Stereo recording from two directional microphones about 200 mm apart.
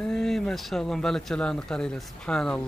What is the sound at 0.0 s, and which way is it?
Speech, centre (ahead or behind).